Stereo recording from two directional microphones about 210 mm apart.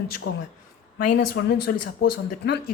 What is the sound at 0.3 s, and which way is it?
Speech, 55° left (ahead or behind).